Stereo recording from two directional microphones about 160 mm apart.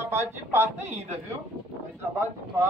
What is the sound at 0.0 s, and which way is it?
Speech, 15° right (ahead or behind).